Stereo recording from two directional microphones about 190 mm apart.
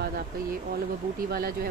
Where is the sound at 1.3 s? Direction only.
50° right (ahead or behind).